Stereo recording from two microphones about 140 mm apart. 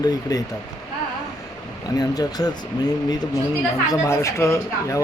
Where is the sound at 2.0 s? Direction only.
30° left (ahead or behind).